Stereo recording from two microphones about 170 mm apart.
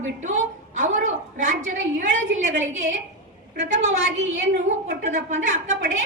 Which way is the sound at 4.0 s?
90° right.